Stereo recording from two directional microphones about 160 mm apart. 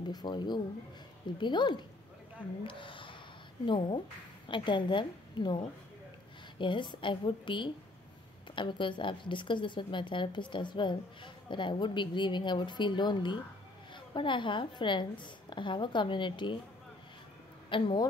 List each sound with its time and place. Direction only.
0.1 s a woman's voice: 30° left (ahead or behind)
17.6 s speech: 30° left (ahead or behind)